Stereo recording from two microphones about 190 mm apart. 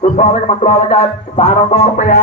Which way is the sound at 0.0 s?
35° left (ahead or behind).